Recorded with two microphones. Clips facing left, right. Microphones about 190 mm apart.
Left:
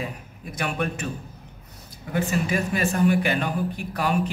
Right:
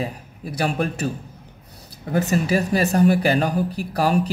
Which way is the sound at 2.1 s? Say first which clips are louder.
Right 4 dB; 40° right (ahead or behind).